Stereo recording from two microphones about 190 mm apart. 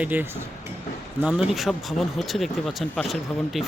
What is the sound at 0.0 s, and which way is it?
Speech, 10° right (ahead or behind).